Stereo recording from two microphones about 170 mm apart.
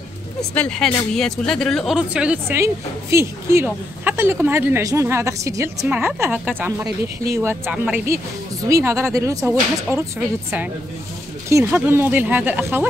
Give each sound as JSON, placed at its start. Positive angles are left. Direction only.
{"t": 0.4, "sound": "speech", "side_deg": 5}